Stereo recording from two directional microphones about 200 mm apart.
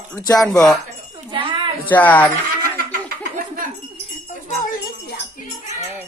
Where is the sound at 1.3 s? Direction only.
25° right (ahead or behind).